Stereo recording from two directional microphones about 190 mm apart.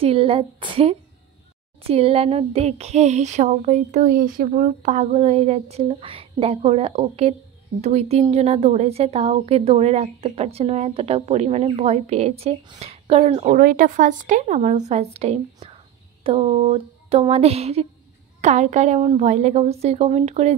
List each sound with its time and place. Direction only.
0.0 s a woman's voice: 30° right (ahead or behind)
13.6 s a woman's voice: 50° right (ahead or behind)